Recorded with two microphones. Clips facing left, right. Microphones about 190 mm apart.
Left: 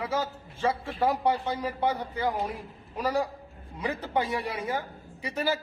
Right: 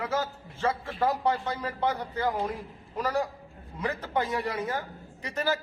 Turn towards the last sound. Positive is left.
turn(degrees=10)  # may be behind; listen again after turning